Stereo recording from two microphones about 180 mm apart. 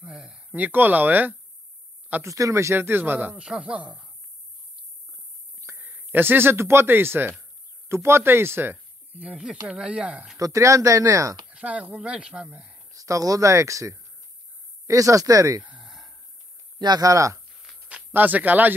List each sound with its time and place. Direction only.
0.0 s a sound: 5° right (ahead or behind)
2.0 s speech: 15° right (ahead or behind)
5.6 s speech: 15° right (ahead or behind)
10.3 s speech: 15° right (ahead or behind)
11.5 s speech: 5° right (ahead or behind)
12.9 s speech: 20° right (ahead or behind)
15.7 s a sound: centre (ahead or behind)
16.7 s speech: 25° right (ahead or behind)
17.6 s a sound: 5° right (ahead or behind)